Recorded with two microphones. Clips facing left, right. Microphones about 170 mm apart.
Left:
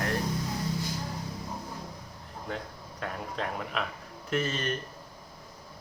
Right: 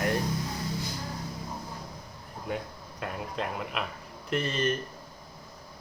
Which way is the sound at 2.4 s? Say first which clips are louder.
Right 3 dB; 10° right (ahead or behind).